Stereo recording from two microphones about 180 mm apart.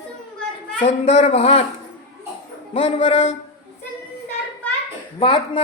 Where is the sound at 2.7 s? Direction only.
30° left (ahead or behind).